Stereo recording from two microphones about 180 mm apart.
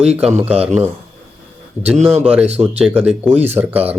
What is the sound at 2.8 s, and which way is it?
Speech, 10° right (ahead or behind).